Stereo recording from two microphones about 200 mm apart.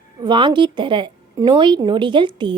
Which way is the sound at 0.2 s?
25° right (ahead or behind).